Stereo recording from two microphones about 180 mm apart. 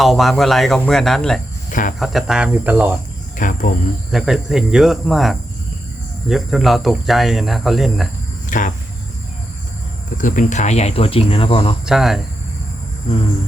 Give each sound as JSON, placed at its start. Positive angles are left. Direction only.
{"t": 0.0, "sound": "speech", "side_deg": 0}
{"t": 1.7, "sound": "speech", "side_deg": 45}
{"t": 2.0, "sound": "speech", "side_deg": 0}
{"t": 3.3, "sound": "speech", "side_deg": 45}
{"t": 4.1, "sound": "speech", "side_deg": 0}
{"t": 8.4, "sound": "speech", "side_deg": 45}
{"t": 10.2, "sound": "speech", "side_deg": 45}
{"t": 11.9, "sound": "speech", "side_deg": 0}